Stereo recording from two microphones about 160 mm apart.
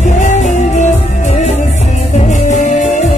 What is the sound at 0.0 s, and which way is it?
Music, 45° left (ahead or behind).